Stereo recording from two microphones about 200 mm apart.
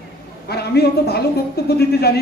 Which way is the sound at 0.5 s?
55° left (ahead or behind).